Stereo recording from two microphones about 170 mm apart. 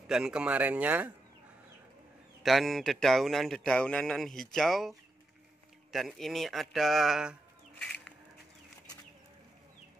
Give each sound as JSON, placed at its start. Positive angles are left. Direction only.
{"t": 0.1, "sound": "speech", "side_deg": -5}
{"t": 2.4, "sound": "speech", "side_deg": 0}
{"t": 7.8, "sound": "music", "side_deg": 5}